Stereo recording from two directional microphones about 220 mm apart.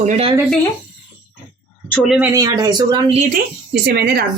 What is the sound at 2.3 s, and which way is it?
Speech, 15° right (ahead or behind).